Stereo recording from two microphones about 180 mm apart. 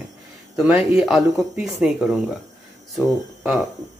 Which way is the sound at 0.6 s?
5° right (ahead or behind).